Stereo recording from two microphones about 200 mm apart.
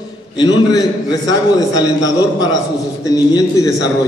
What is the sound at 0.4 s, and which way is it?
A man's voice, 20° left (ahead or behind).